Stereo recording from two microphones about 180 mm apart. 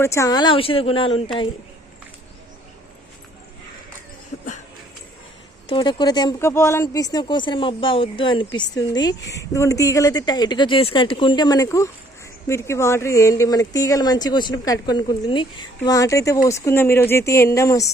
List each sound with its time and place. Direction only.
0.0 s speech: 15° left (ahead or behind)
4.3 s a sound: 45° left (ahead or behind)
5.6 s speech: 25° left (ahead or behind)